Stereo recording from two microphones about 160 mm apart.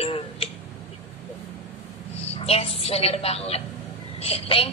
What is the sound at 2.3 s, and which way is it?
A woman's voice, 40° left (ahead or behind).